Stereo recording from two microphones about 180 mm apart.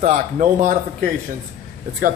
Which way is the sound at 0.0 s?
45° right (ahead or behind).